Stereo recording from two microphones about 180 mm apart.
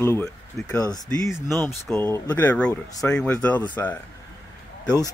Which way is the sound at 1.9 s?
5° left (ahead or behind).